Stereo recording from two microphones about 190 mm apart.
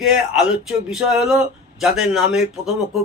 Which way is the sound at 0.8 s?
5° right (ahead or behind).